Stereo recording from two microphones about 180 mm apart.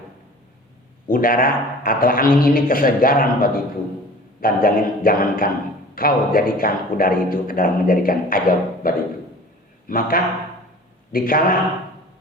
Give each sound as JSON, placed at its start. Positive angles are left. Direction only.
{"t": 1.0, "sound": "speech", "side_deg": 50}
{"t": 9.9, "sound": "speech", "side_deg": 55}